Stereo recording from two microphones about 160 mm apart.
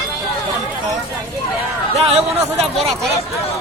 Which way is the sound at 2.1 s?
40° right (ahead or behind).